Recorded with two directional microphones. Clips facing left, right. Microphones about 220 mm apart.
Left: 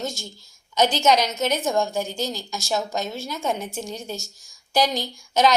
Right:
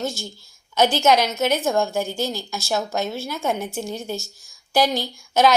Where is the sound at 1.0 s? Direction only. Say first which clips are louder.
Right 2 dB; 10° right (ahead or behind).